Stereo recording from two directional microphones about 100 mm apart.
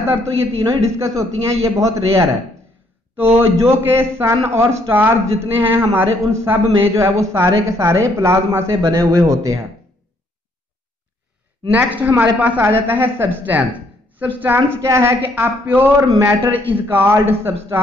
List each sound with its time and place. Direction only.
0.4 s a man's voice: 30° right (ahead or behind)
3.3 s a man's voice: 25° right (ahead or behind)
11.7 s a man's voice: 15° right (ahead or behind)
16.0 s a man's voice: 30° right (ahead or behind)